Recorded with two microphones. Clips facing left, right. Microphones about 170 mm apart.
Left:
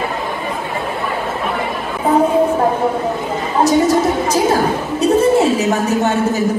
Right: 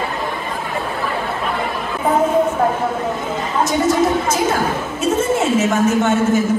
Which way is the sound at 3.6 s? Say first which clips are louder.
Left 3 dB; 35° left (ahead or behind).